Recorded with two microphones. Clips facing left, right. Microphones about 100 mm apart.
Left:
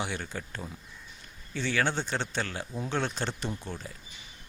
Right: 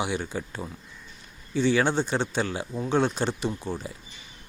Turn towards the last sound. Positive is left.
turn(degrees=-10)  # may be behind; listen again after turning